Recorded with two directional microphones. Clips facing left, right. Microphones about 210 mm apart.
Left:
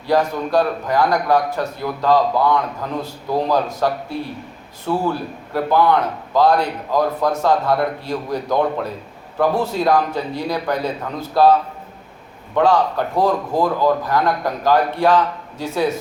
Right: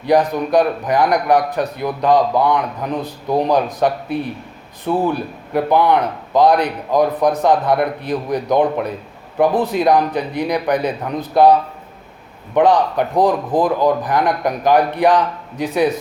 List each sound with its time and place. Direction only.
0.0 s a man's voice: 15° right (ahead or behind)
12.5 s a man's voice: 15° right (ahead or behind)